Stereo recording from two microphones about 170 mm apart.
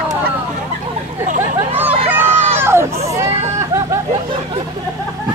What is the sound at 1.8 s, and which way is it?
Vehicle, 10° right (ahead or behind).